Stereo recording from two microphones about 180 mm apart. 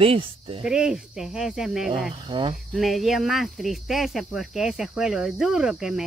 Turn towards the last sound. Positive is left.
turn(degrees=-5)  # may be behind; listen again after turning